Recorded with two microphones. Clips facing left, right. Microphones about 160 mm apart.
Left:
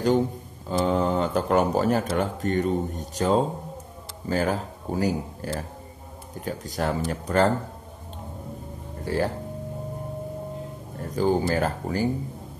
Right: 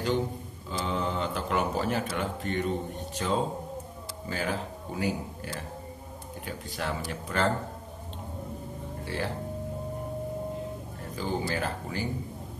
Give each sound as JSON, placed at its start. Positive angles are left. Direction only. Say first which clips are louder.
{"t": 0.7, "sound": "speech", "louder": "left 8 dB", "side_deg": 45}
{"t": 9.0, "sound": "speech", "louder": "left 8 dB", "side_deg": 40}
{"t": 11.1, "sound": "speech", "louder": "left 8 dB", "side_deg": 45}